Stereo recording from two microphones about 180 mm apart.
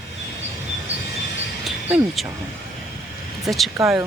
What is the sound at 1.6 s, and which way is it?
Cricket, centre (ahead or behind).